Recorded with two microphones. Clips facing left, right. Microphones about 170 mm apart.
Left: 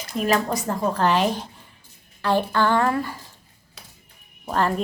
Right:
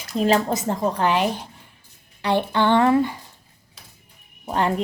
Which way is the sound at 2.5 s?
20° right (ahead or behind).